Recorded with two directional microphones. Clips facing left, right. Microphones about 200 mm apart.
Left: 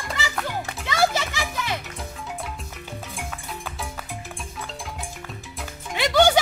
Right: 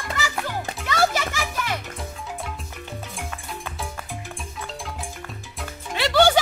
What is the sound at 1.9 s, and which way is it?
Music, centre (ahead or behind).